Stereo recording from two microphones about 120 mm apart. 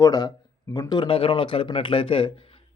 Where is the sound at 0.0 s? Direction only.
35° left (ahead or behind).